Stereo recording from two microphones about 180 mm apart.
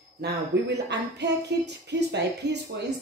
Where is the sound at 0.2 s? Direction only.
70° right (ahead or behind).